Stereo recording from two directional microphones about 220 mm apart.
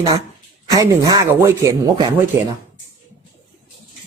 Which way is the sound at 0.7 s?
15° right (ahead or behind).